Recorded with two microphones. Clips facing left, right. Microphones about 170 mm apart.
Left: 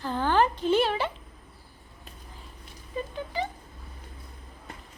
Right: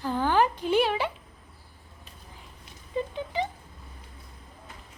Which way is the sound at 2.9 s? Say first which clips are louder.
Right 2 dB; 20° right (ahead or behind).